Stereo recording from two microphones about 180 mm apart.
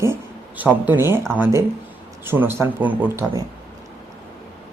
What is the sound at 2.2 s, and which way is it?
Speech, 10° right (ahead or behind).